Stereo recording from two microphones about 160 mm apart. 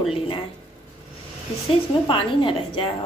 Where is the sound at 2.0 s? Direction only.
35° left (ahead or behind).